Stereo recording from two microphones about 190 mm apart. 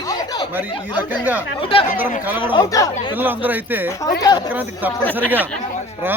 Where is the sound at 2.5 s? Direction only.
20° left (ahead or behind).